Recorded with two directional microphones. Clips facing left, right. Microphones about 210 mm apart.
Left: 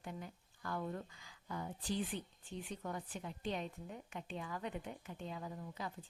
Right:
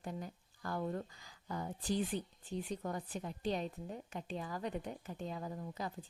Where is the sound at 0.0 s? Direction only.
40° right (ahead or behind).